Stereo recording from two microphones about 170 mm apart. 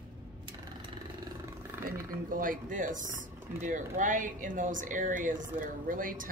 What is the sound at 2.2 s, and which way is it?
Speech, 55° right (ahead or behind).